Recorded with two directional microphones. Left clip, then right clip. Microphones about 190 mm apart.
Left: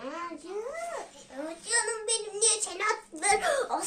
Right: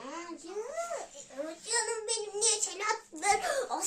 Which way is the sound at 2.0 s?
5° right (ahead or behind).